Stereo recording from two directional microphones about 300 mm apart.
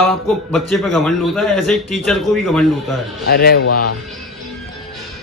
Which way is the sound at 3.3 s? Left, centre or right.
Left.